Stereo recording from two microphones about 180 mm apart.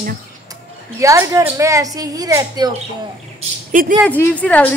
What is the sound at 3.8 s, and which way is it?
Speech, 50° right (ahead or behind).